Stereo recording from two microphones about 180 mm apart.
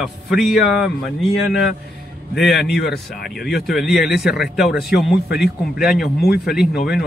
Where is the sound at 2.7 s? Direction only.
65° left (ahead or behind).